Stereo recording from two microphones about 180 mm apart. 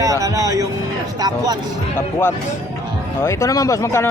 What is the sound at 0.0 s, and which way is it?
Speech, 20° right (ahead or behind).